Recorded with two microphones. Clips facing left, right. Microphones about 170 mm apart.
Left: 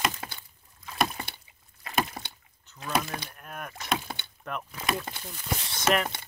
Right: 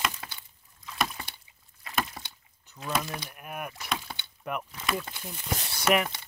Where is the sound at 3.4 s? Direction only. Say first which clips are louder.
Right 3 dB; 10° right (ahead or behind).